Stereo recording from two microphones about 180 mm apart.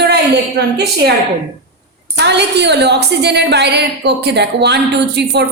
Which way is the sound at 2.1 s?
70° right (ahead or behind).